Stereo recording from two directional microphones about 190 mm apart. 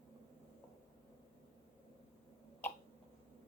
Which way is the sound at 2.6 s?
10° left (ahead or behind).